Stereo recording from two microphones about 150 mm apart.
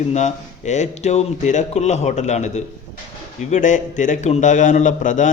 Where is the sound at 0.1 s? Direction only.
50° left (ahead or behind).